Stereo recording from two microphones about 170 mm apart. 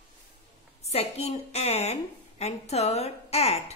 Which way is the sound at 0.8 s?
40° left (ahead or behind).